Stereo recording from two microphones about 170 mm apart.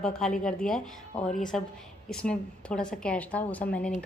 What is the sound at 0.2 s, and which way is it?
A woman's voice, 5° left (ahead or behind).